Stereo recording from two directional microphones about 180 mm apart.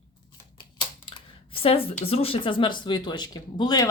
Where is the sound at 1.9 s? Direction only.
35° left (ahead or behind).